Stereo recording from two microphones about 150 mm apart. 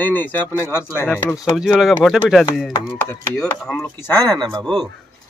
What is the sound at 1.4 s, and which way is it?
Speech, 5° right (ahead or behind).